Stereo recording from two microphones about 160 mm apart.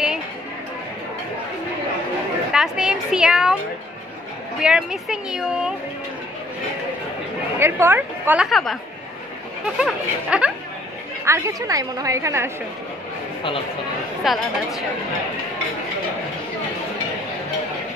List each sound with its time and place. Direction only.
2.5 s speech: 5° right (ahead or behind)
4.6 s speech: 5° right (ahead or behind)
7.5 s a woman's voice: 15° right (ahead or behind)
8.5 s speech: centre (ahead or behind)
9.8 s speech: 5° right (ahead or behind)
11.2 s a woman's voice: 20° right (ahead or behind)
14.2 s speech: centre (ahead or behind)